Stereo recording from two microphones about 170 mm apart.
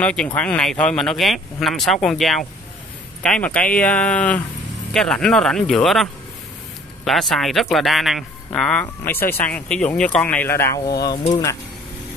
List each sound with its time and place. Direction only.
0.0 s speech: 5° left (ahead or behind)
7.1 s speech: centre (ahead or behind)
11.0 s speech: 25° left (ahead or behind)